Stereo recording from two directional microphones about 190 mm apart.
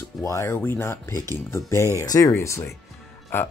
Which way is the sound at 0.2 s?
15° left (ahead or behind).